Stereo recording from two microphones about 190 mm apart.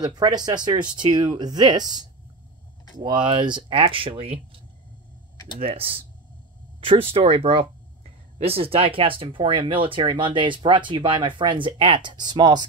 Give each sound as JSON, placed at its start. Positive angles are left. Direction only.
{"t": 0.0, "sound": "speech", "side_deg": -20}
{"t": 3.3, "sound": "speech", "side_deg": -25}
{"t": 5.6, "sound": "speech", "side_deg": -30}